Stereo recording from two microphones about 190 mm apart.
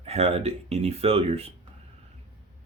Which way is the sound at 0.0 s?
35° right (ahead or behind).